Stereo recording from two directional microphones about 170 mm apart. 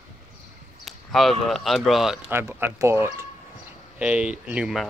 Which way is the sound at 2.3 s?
15° right (ahead or behind).